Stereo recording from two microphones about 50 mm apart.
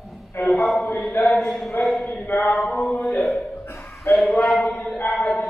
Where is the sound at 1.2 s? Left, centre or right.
Left.